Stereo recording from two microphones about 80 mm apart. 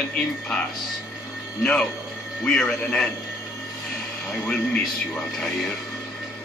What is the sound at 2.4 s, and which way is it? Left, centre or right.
Speech, centre.